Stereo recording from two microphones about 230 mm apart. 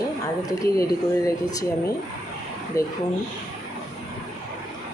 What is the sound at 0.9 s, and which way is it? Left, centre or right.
Speech, centre.